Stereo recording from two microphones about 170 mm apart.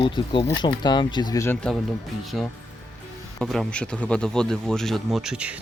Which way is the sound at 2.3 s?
Centre (ahead or behind).